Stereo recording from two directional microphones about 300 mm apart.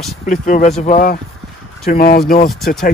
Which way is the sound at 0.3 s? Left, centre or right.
Left.